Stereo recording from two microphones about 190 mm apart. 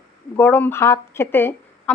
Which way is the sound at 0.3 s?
10° left (ahead or behind).